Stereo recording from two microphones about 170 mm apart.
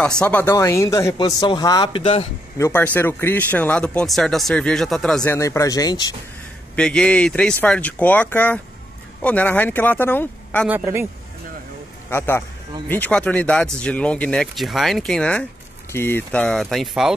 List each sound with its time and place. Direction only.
0.2 s speech: 10° left (ahead or behind)
1.1 s speech: 30° left (ahead or behind)
2.6 s speech: 10° left (ahead or behind)
5.2 s speech: 15° left (ahead or behind)
6.7 s speech: 5° left (ahead or behind)
10.7 s a man's voice: 15° right (ahead or behind)
12.1 s speech: 15° left (ahead or behind); by 17.1 s centre (ahead or behind)